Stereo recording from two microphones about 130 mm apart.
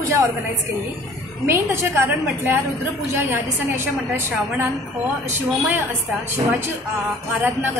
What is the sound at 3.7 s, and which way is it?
Speech, 20° right (ahead or behind).